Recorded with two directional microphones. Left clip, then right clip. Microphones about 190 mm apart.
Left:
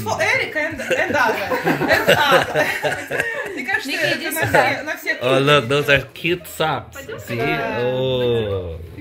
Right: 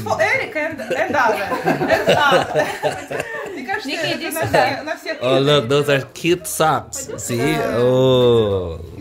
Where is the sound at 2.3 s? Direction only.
10° right (ahead or behind).